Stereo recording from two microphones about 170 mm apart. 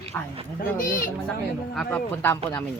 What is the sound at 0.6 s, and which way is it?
Speech, 55° left (ahead or behind).